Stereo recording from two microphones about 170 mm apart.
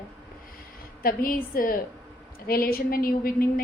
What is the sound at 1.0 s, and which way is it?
A woman's voice, 60° left (ahead or behind).